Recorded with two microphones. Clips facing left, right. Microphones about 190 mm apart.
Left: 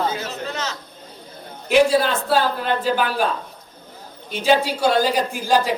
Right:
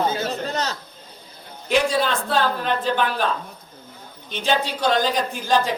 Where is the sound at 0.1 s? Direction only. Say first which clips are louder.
Right 3 dB; 35° right (ahead or behind).